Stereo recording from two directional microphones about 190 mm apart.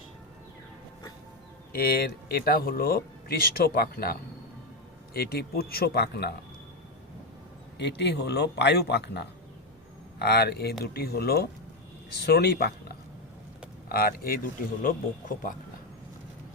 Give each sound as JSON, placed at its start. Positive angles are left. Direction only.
{"t": 1.7, "sound": "a man's voice", "side_deg": 55}
{"t": 7.8, "sound": "a man's voice", "side_deg": 65}
{"t": 13.8, "sound": "speech", "side_deg": 55}